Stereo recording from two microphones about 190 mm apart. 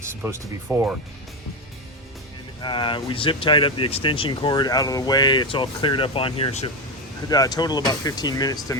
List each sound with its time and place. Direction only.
0.0 s speech: 15° right (ahead or behind)
2.6 s speech: 25° left (ahead or behind)
7.3 s speech: 20° left (ahead or behind)